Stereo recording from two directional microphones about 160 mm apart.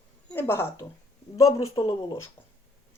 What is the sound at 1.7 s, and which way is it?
Speech, 30° left (ahead or behind).